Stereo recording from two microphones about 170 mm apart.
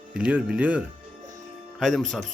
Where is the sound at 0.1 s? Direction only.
5° right (ahead or behind).